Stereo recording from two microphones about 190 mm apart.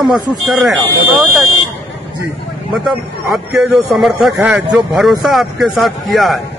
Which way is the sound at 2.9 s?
Centre (ahead or behind).